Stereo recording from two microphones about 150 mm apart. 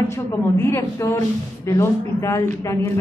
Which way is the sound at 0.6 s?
15° left (ahead or behind).